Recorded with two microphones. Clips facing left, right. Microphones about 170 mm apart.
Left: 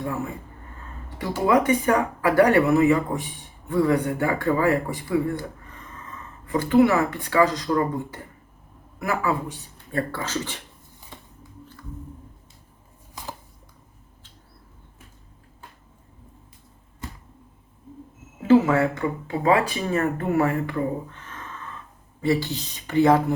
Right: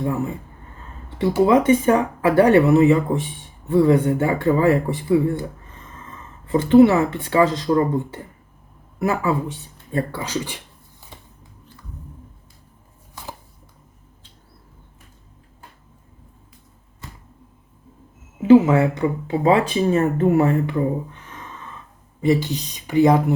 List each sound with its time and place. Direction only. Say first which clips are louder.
0.0 s speech: right 5 dB; 20° right (ahead or behind)
1.5 s speech: right 2 dB; 25° right (ahead or behind)
6.1 s a sound: right 6 dB; 30° right (ahead or behind)
6.8 s speech: right 4 dB; 20° right (ahead or behind)
9.2 s speech: right 3 dB; 20° right (ahead or behind)
18.3 s speech: right 5 dB; 20° right (ahead or behind)
20.7 s a sound: right 4 dB; 15° right (ahead or behind)
22.2 s speech: right 4 dB; 20° right (ahead or behind)